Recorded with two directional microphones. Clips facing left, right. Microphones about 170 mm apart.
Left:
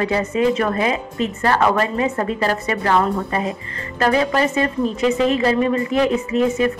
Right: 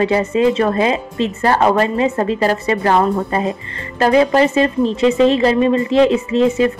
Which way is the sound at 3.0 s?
20° right (ahead or behind).